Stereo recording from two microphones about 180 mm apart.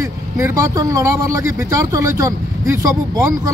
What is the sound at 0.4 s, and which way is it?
Speech, 20° right (ahead or behind).